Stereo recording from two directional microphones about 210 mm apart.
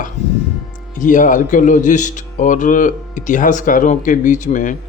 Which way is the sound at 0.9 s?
40° left (ahead or behind).